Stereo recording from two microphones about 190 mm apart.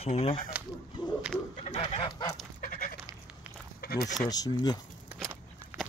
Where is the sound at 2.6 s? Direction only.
45° left (ahead or behind).